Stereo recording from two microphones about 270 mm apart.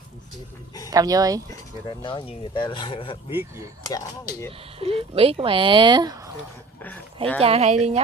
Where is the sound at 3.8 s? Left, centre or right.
Centre.